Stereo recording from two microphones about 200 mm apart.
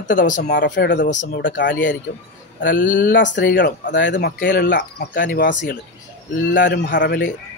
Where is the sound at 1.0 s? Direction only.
40° left (ahead or behind).